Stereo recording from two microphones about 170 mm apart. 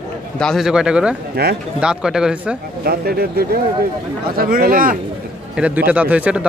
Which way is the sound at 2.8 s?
65° right (ahead or behind).